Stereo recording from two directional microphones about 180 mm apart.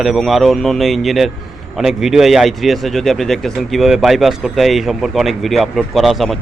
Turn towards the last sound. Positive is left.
turn(degrees=0)  # may be behind; listen again after turning